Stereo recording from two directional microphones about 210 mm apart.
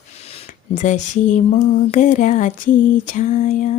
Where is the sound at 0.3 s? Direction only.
35° left (ahead or behind).